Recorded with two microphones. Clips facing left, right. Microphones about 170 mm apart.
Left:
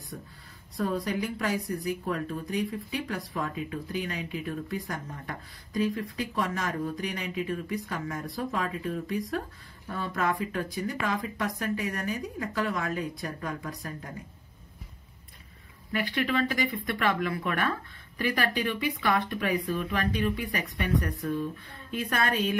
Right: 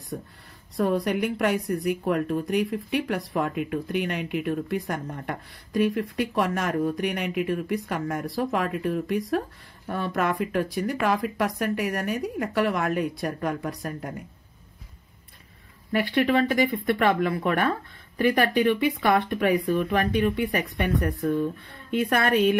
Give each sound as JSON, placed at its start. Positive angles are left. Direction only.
{"t": 0.7, "sound": "speech", "side_deg": -70}
{"t": 15.9, "sound": "speech", "side_deg": -35}